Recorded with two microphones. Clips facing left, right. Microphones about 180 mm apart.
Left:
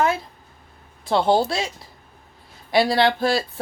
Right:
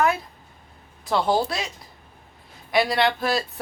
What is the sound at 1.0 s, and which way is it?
Speech, 30° left (ahead or behind).